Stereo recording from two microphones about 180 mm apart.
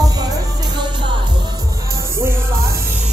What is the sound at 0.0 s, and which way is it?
Music, 20° right (ahead or behind).